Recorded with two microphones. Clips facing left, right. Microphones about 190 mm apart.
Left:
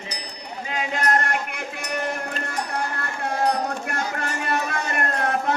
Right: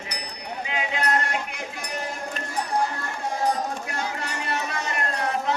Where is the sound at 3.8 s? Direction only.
55° left (ahead or behind).